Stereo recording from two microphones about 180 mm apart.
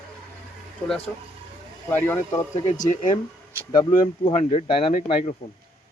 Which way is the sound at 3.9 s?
30° left (ahead or behind).